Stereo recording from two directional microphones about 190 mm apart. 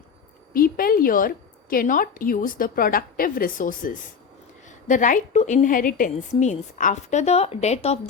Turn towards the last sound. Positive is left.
turn(degrees=35)  # may be behind; listen again after turning